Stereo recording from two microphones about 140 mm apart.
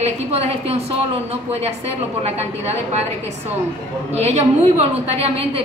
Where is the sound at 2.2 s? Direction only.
50° right (ahead or behind).